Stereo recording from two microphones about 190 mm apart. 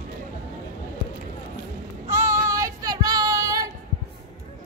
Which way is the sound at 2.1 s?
15° right (ahead or behind).